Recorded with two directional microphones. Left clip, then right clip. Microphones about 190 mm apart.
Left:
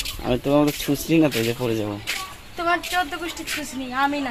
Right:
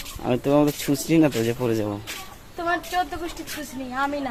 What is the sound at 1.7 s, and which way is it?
Speech, 10° right (ahead or behind).